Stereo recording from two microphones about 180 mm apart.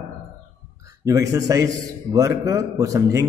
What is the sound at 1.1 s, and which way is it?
A man's voice, 20° right (ahead or behind).